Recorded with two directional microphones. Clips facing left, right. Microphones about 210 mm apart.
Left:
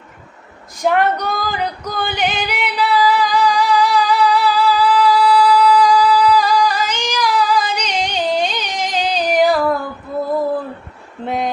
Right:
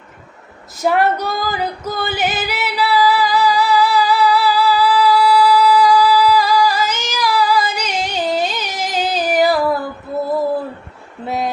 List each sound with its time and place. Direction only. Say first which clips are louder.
0.8 s female singing: even; 5° right (ahead or behind)